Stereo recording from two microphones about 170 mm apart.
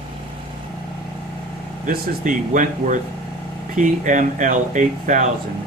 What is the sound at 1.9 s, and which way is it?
Speech, 50° right (ahead or behind).